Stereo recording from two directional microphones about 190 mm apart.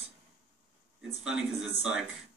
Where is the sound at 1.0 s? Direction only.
5° right (ahead or behind).